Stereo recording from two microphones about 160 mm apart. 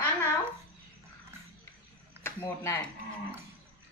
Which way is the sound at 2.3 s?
15° left (ahead or behind).